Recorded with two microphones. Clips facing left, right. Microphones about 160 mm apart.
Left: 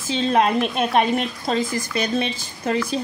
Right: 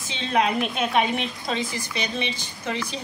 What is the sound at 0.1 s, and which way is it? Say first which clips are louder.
A woman's voice: left 5 dB; 45° left (ahead or behind).